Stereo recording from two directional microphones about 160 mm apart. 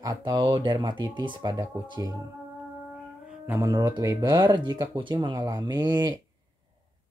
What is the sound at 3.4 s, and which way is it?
Speech, 20° right (ahead or behind).